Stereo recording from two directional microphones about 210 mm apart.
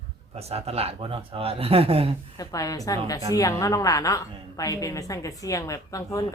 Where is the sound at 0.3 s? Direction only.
30° right (ahead or behind).